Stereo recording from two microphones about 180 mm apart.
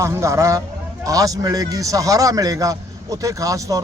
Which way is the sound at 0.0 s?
15° right (ahead or behind).